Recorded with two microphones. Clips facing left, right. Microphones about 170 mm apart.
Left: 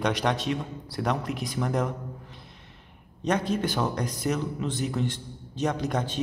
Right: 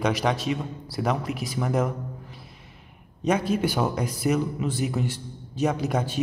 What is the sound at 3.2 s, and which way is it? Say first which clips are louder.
Speech: right 3 dB; 5° right (ahead or behind).